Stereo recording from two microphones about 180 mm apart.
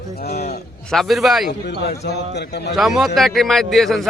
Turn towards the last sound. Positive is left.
turn(degrees=0)  # may be behind; listen again after turning